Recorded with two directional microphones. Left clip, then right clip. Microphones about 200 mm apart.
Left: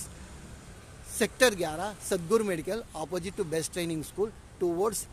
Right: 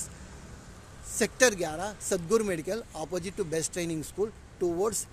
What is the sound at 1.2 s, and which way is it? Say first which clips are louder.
A man's voice: even; centre (ahead or behind).